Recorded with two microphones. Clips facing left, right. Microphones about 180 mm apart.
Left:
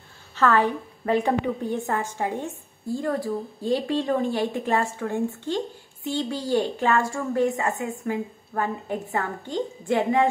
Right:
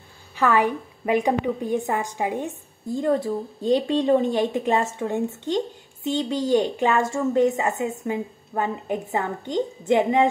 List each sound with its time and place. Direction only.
0.4 s a woman's voice: 10° right (ahead or behind)